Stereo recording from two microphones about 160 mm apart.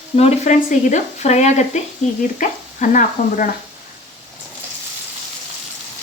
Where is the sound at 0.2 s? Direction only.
45° left (ahead or behind).